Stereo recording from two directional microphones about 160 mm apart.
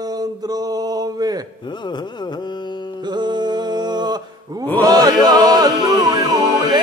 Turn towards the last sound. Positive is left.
turn(degrees=-25)  # may be behind; listen again after turning